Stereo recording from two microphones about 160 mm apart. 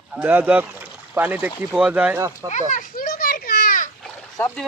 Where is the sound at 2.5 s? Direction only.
50° left (ahead or behind).